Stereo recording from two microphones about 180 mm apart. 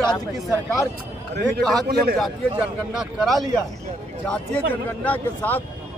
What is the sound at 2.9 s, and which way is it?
Speech, centre (ahead or behind).